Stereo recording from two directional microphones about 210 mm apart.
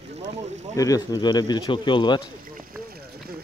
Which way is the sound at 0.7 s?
15° left (ahead or behind).